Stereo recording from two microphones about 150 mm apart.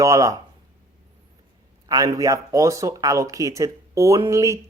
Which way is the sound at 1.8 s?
25° right (ahead or behind).